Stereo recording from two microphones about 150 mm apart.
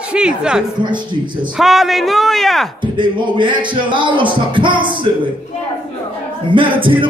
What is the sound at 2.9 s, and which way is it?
Speech, 30° right (ahead or behind).